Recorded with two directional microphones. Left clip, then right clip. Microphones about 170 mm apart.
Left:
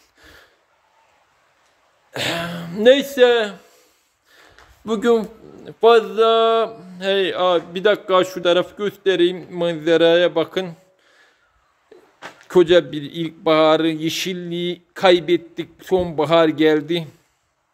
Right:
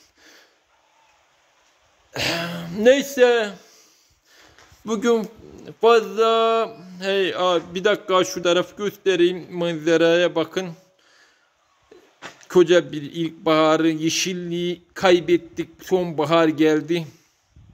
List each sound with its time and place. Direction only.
0.2 s gasp: 15° left (ahead or behind)
2.1 s a man's voice: 10° right (ahead or behind); by 11.2 s 5° left (ahead or behind)
12.4 s a man's voice: 5° left (ahead or behind)